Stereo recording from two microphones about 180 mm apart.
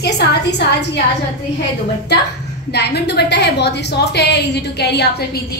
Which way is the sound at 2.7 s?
65° left (ahead or behind).